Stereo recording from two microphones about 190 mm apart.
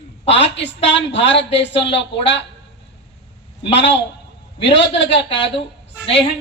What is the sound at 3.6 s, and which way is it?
A woman's voice, 70° left (ahead or behind).